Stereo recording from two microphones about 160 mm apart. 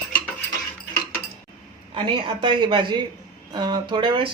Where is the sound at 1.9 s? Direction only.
30° right (ahead or behind).